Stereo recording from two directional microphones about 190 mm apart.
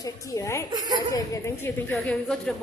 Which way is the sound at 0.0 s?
20° left (ahead or behind).